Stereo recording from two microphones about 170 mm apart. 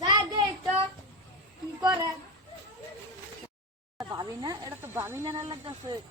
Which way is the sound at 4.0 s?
20° right (ahead or behind).